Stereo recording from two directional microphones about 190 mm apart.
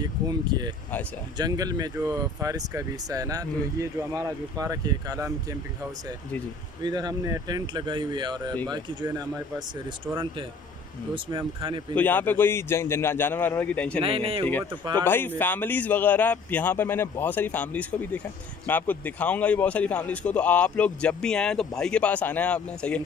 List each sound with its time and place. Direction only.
0.0 s speech: 20° right (ahead or behind)
6.8 s speech: 20° right (ahead or behind)
11.3 s speech: 25° right (ahead or behind)
11.9 s a man's voice: 10° left (ahead or behind)
14.0 s speech: 30° right (ahead or behind)
15.0 s a man's voice: 10° left (ahead or behind)